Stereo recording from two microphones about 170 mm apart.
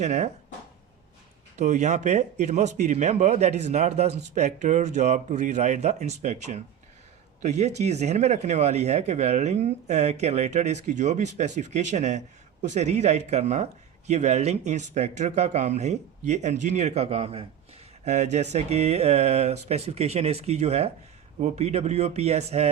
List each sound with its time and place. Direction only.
0.0 s speech: 40° right (ahead or behind)
1.5 s a man's voice: 45° right (ahead or behind)